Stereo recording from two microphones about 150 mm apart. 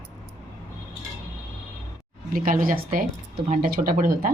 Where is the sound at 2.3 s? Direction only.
65° right (ahead or behind).